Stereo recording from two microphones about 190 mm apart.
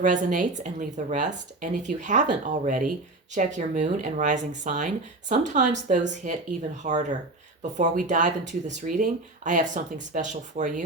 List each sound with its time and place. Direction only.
0.0 s speech: 40° right (ahead or behind)